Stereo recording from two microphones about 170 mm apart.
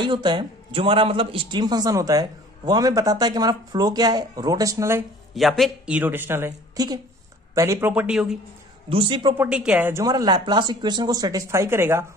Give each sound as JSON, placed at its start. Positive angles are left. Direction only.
{"t": 0.0, "sound": "a man's voice", "side_deg": -25}
{"t": 5.3, "sound": "a woman's voice", "side_deg": 0}
{"t": 8.8, "sound": "a man's voice", "side_deg": -30}
{"t": 9.4, "sound": "a man's voice", "side_deg": -5}